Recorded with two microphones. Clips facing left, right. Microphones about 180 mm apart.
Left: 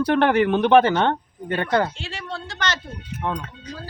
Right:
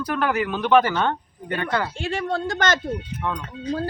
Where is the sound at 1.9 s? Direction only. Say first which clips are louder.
Right 8 dB; 50° right (ahead or behind).